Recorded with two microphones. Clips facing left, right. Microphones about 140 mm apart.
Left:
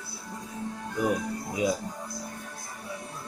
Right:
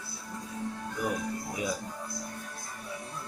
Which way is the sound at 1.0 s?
20° left (ahead or behind).